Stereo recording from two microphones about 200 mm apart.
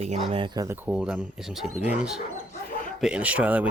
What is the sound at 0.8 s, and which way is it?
Speech, 5° right (ahead or behind).